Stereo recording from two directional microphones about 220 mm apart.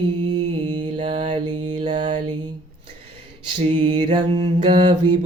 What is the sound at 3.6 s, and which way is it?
Mantra, 20° right (ahead or behind).